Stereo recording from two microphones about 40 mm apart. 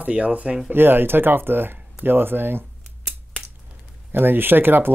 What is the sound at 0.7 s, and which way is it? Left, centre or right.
Speech, right.